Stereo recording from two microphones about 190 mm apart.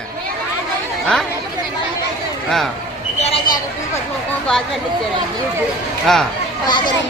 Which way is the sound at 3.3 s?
30° left (ahead or behind).